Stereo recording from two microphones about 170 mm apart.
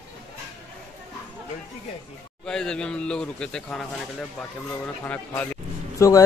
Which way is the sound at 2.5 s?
5° left (ahead or behind).